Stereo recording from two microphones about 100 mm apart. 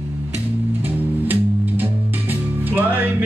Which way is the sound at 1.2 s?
20° right (ahead or behind).